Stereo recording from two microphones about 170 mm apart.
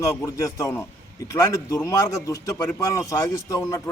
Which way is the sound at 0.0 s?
15° left (ahead or behind).